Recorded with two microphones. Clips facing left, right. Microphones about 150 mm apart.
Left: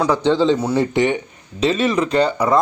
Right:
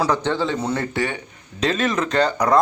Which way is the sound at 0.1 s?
15° left (ahead or behind).